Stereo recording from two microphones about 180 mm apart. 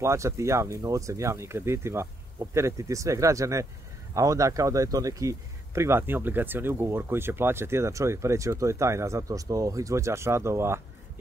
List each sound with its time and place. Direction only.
0.0 s speech: 15° right (ahead or behind)